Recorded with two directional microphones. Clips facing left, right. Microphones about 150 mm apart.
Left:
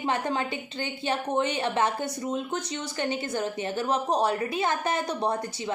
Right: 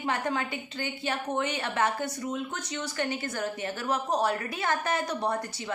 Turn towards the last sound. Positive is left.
turn(degrees=20)  # may be behind; listen again after turning